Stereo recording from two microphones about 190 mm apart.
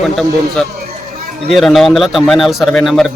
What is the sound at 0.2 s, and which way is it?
A man's voice, centre (ahead or behind).